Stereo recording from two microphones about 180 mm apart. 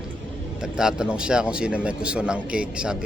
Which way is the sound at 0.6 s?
5° right (ahead or behind).